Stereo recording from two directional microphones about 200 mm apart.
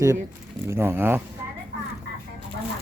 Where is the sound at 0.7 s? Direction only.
10° right (ahead or behind).